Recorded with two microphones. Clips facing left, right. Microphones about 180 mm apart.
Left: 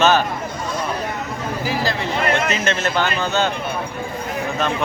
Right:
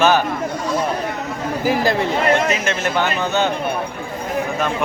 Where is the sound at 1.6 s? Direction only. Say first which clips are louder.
Right 6 dB; 50° right (ahead or behind).